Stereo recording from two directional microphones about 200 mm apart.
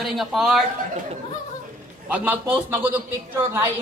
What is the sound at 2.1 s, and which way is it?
Speech, 10° right (ahead or behind).